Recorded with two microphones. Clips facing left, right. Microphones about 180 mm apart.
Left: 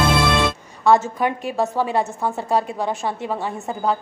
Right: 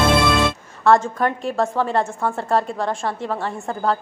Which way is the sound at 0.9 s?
5° left (ahead or behind).